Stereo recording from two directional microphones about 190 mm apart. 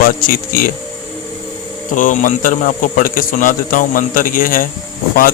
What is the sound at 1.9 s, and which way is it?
A man's voice, 45° left (ahead or behind).